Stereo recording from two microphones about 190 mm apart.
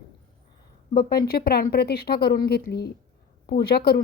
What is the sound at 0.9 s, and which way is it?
A woman's voice, 55° left (ahead or behind).